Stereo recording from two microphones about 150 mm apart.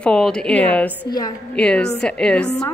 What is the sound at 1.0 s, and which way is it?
Speech, 25° left (ahead or behind).